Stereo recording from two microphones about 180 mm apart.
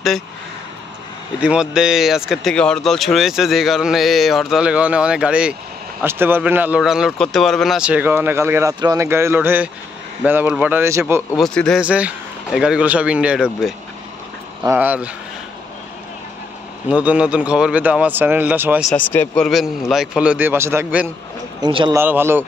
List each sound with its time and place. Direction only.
1.4 s speech: 5° right (ahead or behind)
11.3 s speech: centre (ahead or behind)
16.9 s speech: 5° right (ahead or behind)
18.9 s speech: 10° left (ahead or behind); by 21.1 s 10° right (ahead or behind)
21.5 s speech: 25° right (ahead or behind)
21.9 s speech: 10° right (ahead or behind)